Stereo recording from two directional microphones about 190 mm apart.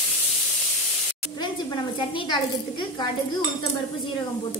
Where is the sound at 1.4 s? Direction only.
25° left (ahead or behind).